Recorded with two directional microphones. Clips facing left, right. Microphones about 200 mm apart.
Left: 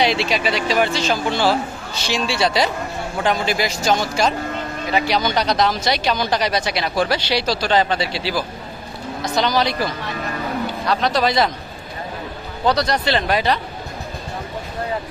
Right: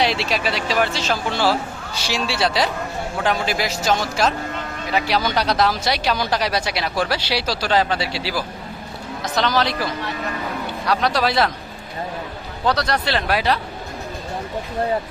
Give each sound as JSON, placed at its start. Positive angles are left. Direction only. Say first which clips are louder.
{"t": 0.0, "sound": "speech", "louder": "left 2 dB", "side_deg": 0}
{"t": 10.8, "sound": "speech", "louder": "even", "side_deg": -10}
{"t": 12.6, "sound": "speech", "louder": "left 2 dB", "side_deg": -5}